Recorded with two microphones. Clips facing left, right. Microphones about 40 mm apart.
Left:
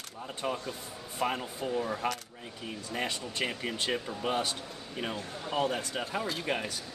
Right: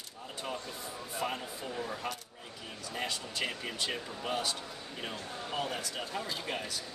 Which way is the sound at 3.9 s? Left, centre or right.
Centre.